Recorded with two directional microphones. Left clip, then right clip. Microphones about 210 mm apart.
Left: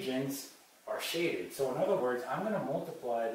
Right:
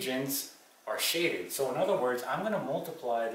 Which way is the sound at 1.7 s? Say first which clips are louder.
Right 2 dB; 15° left (ahead or behind).